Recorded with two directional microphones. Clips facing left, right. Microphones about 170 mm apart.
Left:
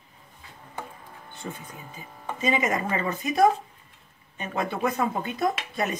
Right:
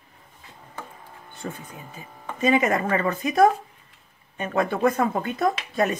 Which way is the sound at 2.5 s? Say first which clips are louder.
Right 5 dB; 50° right (ahead or behind).